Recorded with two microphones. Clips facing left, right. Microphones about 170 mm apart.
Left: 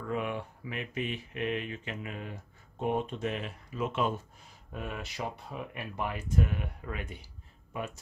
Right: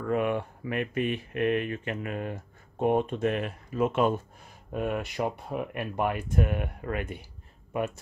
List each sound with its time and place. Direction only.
0.1 s speech: 55° right (ahead or behind)